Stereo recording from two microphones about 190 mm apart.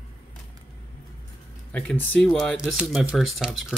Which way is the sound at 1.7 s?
10° left (ahead or behind).